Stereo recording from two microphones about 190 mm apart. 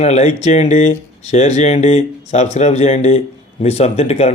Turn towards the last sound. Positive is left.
turn(degrees=35)  # may be behind; listen again after turning